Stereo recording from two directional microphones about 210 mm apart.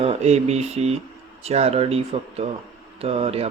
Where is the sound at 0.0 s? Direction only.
30° right (ahead or behind).